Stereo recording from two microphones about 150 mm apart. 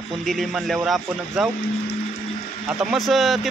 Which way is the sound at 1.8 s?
90° left.